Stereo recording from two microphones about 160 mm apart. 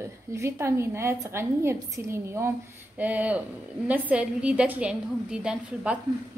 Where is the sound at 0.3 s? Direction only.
15° right (ahead or behind).